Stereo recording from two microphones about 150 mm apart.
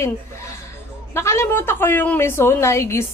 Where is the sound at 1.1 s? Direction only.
15° left (ahead or behind).